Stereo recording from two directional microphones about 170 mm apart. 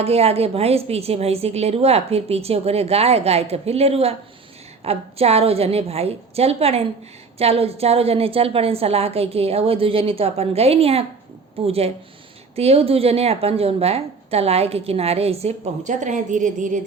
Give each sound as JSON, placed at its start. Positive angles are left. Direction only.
{"t": 0.0, "sound": "a woman's voice", "side_deg": -35}